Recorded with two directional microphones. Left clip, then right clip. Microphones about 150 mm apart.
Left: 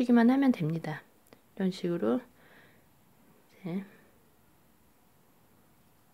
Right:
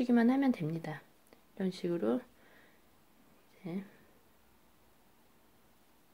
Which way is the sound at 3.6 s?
25° left (ahead or behind).